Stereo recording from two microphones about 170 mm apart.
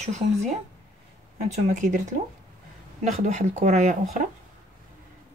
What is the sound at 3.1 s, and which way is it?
Speech, 45° right (ahead or behind).